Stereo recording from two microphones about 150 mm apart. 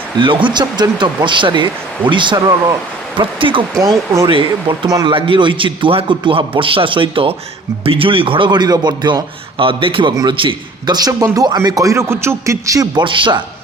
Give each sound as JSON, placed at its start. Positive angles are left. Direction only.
{"t": 0.2, "sound": "a man's voice", "side_deg": -35}
{"t": 4.9, "sound": "a man's voice", "side_deg": -25}
{"t": 5.1, "sound": "a man's voice", "side_deg": -35}